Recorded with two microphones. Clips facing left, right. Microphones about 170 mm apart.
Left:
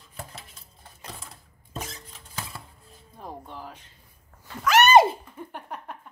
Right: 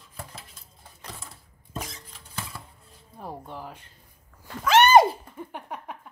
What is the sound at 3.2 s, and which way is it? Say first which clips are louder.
Music: right 2 dB; 10° right (ahead or behind).